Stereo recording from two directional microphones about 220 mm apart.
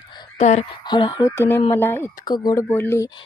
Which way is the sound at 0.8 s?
20° left (ahead or behind).